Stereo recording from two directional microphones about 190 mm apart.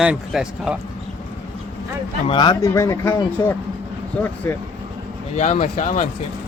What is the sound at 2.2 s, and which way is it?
Speech, 25° left (ahead or behind).